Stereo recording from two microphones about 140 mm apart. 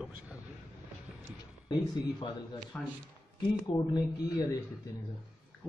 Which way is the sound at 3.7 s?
45° left (ahead or behind).